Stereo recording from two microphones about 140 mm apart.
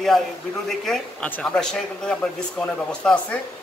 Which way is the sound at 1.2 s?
10° left (ahead or behind).